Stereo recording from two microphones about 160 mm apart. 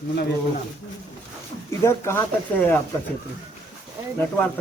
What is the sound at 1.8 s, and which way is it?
Speech, 15° left (ahead or behind).